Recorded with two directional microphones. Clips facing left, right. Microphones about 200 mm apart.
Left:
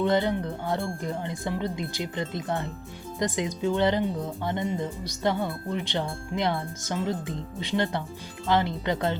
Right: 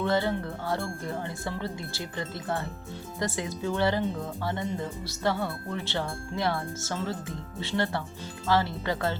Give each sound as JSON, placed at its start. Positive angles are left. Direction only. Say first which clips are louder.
{"t": 0.0, "sound": "speech", "louder": "left 3 dB", "side_deg": 20}